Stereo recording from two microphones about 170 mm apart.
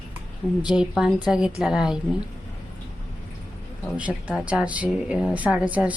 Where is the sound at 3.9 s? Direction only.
10° right (ahead or behind).